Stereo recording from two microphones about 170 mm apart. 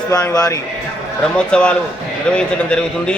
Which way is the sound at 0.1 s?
20° left (ahead or behind).